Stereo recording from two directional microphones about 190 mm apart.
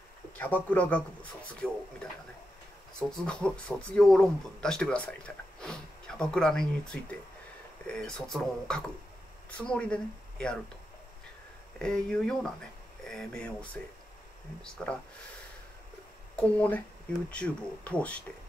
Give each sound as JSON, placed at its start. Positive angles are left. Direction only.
{"t": 0.4, "sound": "speech", "side_deg": 10}
{"t": 11.8, "sound": "speech", "side_deg": 5}
{"t": 16.3, "sound": "speech", "side_deg": 5}